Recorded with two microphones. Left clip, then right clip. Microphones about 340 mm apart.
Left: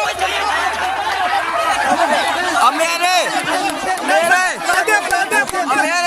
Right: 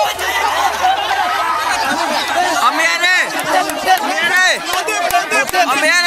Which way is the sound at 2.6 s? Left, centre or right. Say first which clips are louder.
Even; centre.